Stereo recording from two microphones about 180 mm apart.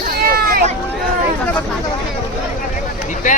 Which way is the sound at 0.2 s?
60° right (ahead or behind).